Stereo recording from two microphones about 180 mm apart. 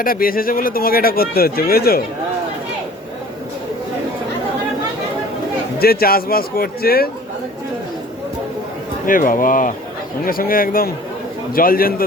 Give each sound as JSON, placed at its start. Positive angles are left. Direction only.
{"t": 0.0, "sound": "speech", "side_deg": 55}
{"t": 5.8, "sound": "speech", "side_deg": 55}
{"t": 9.0, "sound": "speech", "side_deg": 50}